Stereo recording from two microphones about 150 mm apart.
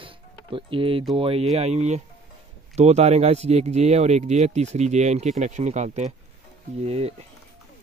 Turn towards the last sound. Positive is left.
turn(degrees=-45)  # may be behind; listen again after turning